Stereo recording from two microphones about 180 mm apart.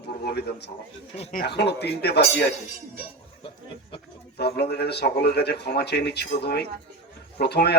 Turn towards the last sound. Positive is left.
turn(degrees=65)  # may be behind; listen again after turning